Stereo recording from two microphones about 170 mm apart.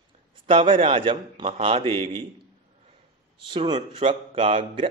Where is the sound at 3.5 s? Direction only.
30° right (ahead or behind).